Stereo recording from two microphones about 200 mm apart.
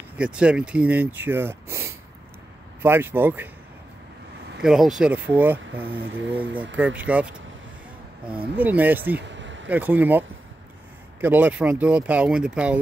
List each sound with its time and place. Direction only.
0.2 s speech: 5° right (ahead or behind)
4.6 s speech: centre (ahead or behind)
8.3 s speech: 10° right (ahead or behind)
9.3 s a sound: 65° right (ahead or behind)
9.7 s speech: 10° right (ahead or behind)